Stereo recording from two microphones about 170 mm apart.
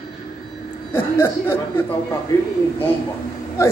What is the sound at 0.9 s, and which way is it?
Speech, 15° left (ahead or behind).